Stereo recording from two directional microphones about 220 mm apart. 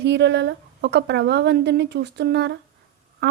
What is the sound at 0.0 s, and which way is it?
A woman's voice, 50° right (ahead or behind).